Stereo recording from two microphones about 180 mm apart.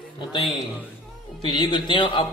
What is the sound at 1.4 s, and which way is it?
Speech, 25° left (ahead or behind).